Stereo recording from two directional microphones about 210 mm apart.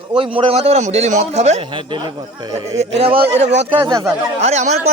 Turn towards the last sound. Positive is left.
turn(degrees=-30)  # may be behind; listen again after turning